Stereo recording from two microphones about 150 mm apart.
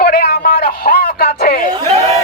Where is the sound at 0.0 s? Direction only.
90° left.